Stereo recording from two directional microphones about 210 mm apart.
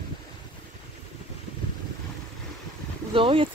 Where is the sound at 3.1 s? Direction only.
25° right (ahead or behind).